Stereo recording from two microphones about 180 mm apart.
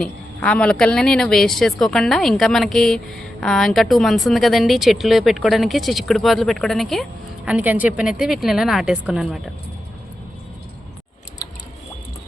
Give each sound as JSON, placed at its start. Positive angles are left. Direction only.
{"t": 0.0, "sound": "speech", "side_deg": 5}